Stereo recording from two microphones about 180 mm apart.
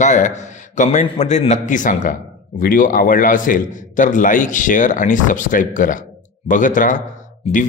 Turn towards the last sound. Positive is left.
turn(degrees=45)  # may be behind; listen again after turning